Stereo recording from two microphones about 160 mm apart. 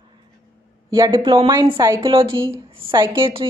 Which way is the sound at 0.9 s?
30° right (ahead or behind).